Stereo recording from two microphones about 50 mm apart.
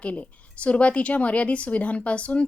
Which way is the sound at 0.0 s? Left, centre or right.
Left.